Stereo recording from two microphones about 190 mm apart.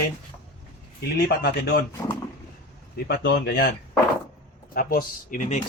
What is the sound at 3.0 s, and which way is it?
Speech, 55° left (ahead or behind).